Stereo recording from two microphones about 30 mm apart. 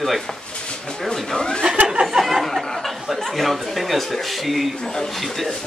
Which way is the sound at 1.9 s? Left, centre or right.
Right.